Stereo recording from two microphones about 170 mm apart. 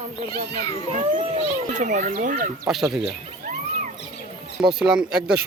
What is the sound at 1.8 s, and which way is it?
Speech, 45° right (ahead or behind).